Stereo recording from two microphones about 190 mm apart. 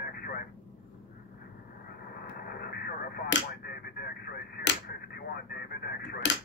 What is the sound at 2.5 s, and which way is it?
Radio, 55° left (ahead or behind).